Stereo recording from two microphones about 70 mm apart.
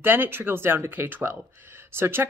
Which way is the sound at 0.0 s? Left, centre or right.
Right.